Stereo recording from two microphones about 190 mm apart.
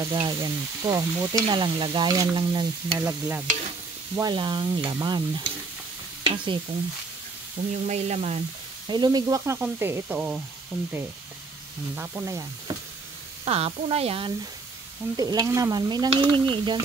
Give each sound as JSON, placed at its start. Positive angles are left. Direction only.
{"t": 0.0, "sound": "stir", "side_deg": -20}
{"t": 6.2, "sound": "speech", "side_deg": -25}
{"t": 7.8, "sound": "speech", "side_deg": -35}
{"t": 8.8, "sound": "stir", "side_deg": -25}
{"t": 9.6, "sound": "sizzle", "side_deg": -15}
{"t": 11.9, "sound": "sizzle", "side_deg": -10}
{"t": 13.5, "sound": "speech", "side_deg": -30}
{"t": 15.1, "sound": "stir", "side_deg": -20}